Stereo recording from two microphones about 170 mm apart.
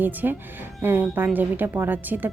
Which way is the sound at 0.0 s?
10° right (ahead or behind).